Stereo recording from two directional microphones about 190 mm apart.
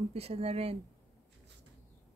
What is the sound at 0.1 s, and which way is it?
Speech, 30° right (ahead or behind).